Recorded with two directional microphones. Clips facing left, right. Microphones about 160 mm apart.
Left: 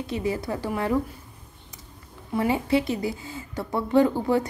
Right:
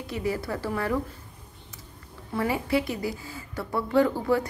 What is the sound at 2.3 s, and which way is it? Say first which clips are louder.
A woman's voice: left 3 dB; 25° left (ahead or behind).